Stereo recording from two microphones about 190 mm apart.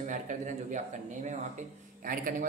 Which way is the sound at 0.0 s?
40° right (ahead or behind).